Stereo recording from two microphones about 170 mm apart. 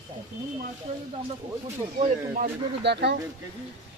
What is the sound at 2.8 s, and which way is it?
Speech, 85° right.